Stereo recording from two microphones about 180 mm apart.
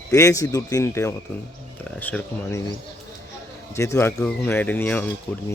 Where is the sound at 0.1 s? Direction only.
15° left (ahead or behind).